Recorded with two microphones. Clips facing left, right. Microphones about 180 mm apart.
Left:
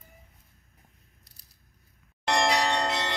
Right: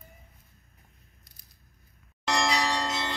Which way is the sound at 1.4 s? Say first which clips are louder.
Right 2 dB; 35° left (ahead or behind).